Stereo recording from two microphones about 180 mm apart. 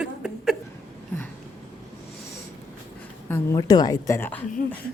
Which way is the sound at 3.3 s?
20° left (ahead or behind).